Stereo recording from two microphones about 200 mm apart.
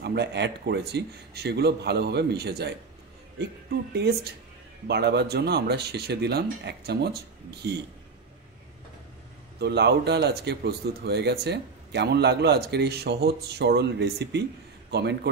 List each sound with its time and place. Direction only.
0.0 s speech: 55° right (ahead or behind)
3.9 s speech: 55° right (ahead or behind)
9.6 s a man's voice: 55° right (ahead or behind)